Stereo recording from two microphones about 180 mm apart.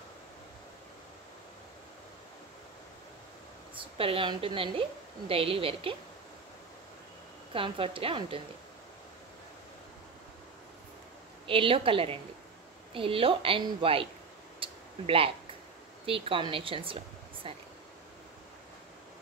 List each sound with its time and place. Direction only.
4.0 s a woman's voice: 30° right (ahead or behind)
7.5 s a woman's voice: 30° right (ahead or behind)
11.4 s a woman's voice: 30° right (ahead or behind)
14.6 s a sound: 30° right (ahead or behind)
16.1 s speech: 30° right (ahead or behind)